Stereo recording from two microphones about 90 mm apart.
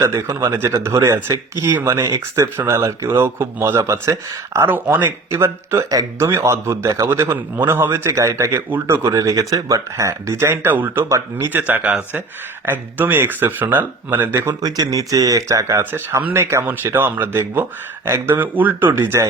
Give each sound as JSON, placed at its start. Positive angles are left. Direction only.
{"t": 0.0, "sound": "speech", "side_deg": -35}
{"t": 11.1, "sound": "speech", "side_deg": -35}
{"t": 11.5, "sound": "speech", "side_deg": -20}
{"t": 14.6, "sound": "speech", "side_deg": -40}
{"t": 15.8, "sound": "speech", "side_deg": -20}
{"t": 19.1, "sound": "speech", "side_deg": -35}